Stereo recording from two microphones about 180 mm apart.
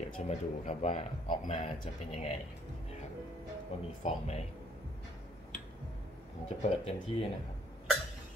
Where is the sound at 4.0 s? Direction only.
35° left (ahead or behind).